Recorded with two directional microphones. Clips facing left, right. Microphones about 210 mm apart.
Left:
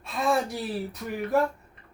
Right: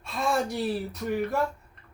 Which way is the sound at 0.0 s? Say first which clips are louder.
Left 1 dB; centre (ahead or behind).